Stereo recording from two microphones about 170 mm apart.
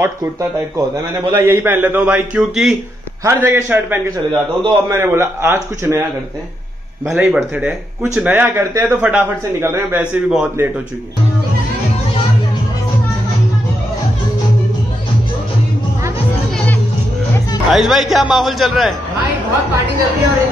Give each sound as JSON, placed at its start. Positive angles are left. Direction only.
{"t": 0.0, "sound": "speech", "side_deg": -15}
{"t": 7.1, "sound": "speech", "side_deg": -10}
{"t": 16.5, "sound": "music", "side_deg": 10}
{"t": 17.6, "sound": "a man's voice", "side_deg": 0}